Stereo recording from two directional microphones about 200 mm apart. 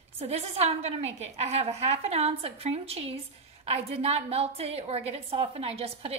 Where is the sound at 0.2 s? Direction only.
30° right (ahead or behind).